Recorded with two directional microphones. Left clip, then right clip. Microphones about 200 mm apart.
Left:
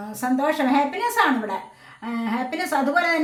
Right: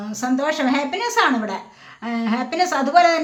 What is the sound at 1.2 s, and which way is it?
A woman's voice, 35° right (ahead or behind).